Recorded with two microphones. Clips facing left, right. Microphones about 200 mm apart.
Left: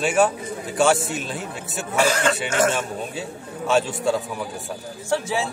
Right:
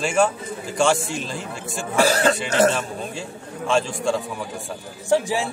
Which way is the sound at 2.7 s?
5° left (ahead or behind).